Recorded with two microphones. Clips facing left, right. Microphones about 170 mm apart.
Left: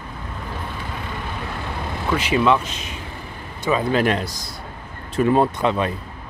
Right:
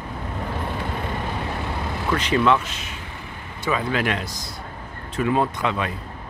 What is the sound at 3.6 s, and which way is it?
Speech, 30° left (ahead or behind).